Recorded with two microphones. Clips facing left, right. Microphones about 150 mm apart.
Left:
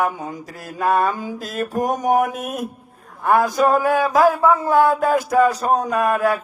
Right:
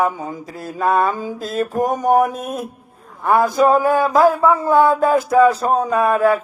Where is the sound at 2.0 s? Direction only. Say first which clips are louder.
Right 3 dB; 50° right (ahead or behind).